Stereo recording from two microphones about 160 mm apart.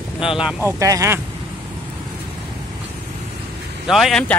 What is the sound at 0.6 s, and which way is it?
Speech, 20° right (ahead or behind).